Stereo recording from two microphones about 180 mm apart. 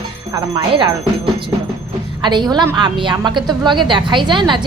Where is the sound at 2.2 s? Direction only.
25° right (ahead or behind).